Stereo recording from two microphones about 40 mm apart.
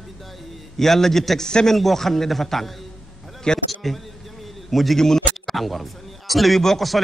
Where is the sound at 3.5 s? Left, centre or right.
Left.